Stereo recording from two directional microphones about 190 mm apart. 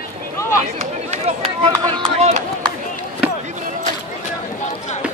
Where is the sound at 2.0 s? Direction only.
35° right (ahead or behind).